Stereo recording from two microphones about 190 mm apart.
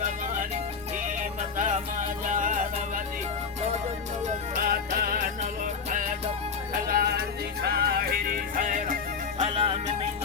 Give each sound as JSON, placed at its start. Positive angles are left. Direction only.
{"t": 1.5, "sound": "music", "side_deg": -40}
{"t": 4.5, "sound": "music", "side_deg": -50}
{"t": 6.8, "sound": "music", "side_deg": -55}
{"t": 9.4, "sound": "music", "side_deg": -30}